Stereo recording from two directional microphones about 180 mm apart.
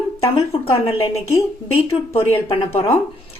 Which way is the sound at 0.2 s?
35° left (ahead or behind).